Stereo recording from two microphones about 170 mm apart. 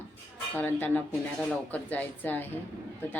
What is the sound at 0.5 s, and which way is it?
A woman's voice, 10° left (ahead or behind).